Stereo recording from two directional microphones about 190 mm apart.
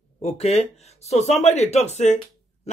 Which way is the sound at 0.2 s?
35° left (ahead or behind).